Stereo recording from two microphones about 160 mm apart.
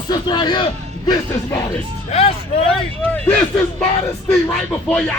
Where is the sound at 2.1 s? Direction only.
40° left (ahead or behind).